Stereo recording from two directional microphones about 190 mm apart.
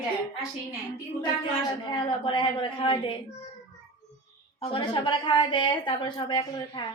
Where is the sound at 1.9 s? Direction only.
25° left (ahead or behind).